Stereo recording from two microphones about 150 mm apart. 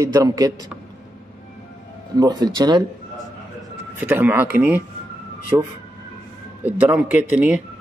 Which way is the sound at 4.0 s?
10° right (ahead or behind).